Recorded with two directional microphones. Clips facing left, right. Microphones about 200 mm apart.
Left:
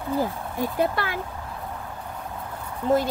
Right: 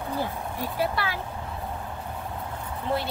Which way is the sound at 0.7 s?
50° left (ahead or behind).